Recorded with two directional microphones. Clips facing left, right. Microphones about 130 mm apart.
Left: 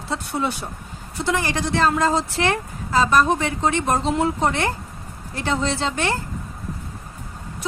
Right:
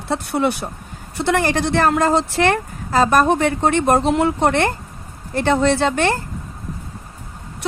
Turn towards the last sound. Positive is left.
turn(degrees=-55)  # may be behind; listen again after turning